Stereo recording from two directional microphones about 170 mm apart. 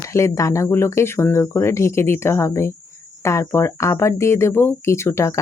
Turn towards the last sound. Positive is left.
turn(degrees=15)  # may be behind; listen again after turning